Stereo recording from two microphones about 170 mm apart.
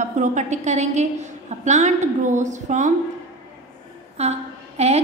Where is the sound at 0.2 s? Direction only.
45° right (ahead or behind).